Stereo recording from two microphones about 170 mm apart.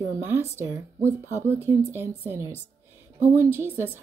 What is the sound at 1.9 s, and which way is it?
Speech, 15° right (ahead or behind).